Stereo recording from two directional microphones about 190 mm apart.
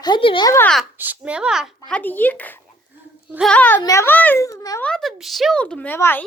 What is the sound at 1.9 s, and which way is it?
A child's voice, 10° left (ahead or behind).